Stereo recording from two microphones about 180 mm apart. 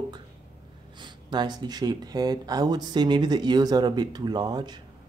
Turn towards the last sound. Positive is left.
turn(degrees=-25)  # may be behind; listen again after turning